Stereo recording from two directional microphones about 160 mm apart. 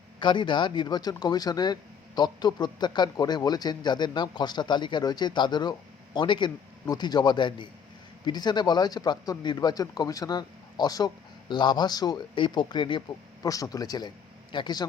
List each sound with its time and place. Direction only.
0.2 s speech: 30° left (ahead or behind)